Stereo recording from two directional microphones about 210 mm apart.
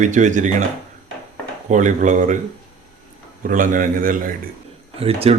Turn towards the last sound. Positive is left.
turn(degrees=-30)  # may be behind; listen again after turning